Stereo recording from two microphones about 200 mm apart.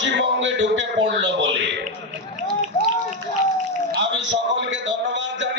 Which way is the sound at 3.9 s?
65° right (ahead or behind).